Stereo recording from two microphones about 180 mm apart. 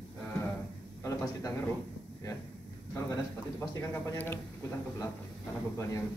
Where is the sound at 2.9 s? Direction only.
15° left (ahead or behind).